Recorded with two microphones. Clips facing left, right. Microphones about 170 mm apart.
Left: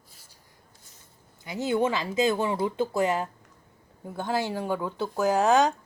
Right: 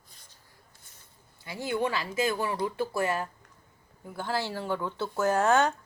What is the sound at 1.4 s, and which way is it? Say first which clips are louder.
Speech: left 4 dB; 20° left (ahead or behind).